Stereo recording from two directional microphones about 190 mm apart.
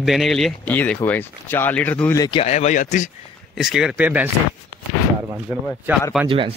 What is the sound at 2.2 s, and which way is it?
Speech, 30° left (ahead or behind).